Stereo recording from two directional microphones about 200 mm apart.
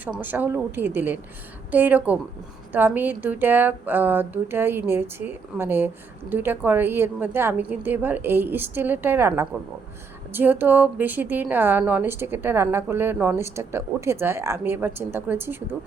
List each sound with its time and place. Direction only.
0.0 s a woman's voice: 10° right (ahead or behind)